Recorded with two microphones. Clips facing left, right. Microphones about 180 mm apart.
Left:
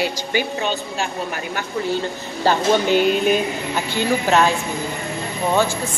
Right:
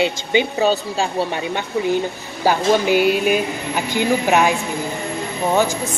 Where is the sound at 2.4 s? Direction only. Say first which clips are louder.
Right 1 dB; 10° right (ahead or behind).